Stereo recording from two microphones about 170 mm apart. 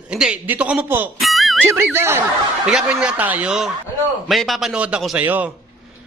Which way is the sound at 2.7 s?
5° right (ahead or behind).